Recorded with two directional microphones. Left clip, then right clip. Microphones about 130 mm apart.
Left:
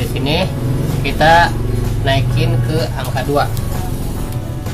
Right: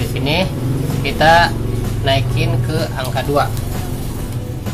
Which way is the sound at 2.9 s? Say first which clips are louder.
Right 1 dB; 25° right (ahead or behind).